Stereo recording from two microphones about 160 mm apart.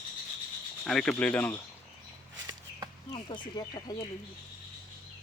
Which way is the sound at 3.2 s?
30° left (ahead or behind).